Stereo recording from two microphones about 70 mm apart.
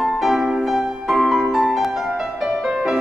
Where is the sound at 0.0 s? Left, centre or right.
Centre.